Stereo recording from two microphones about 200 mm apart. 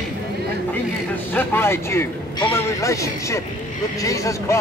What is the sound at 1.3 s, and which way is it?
Speech, 10° left (ahead or behind).